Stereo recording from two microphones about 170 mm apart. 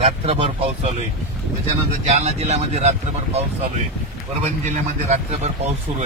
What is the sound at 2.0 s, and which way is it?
Speech, 40° right (ahead or behind).